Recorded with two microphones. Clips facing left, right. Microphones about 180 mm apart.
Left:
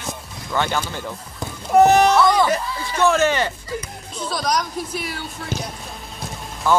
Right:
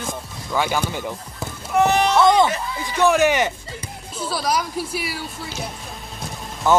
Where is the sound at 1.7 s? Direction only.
40° left (ahead or behind).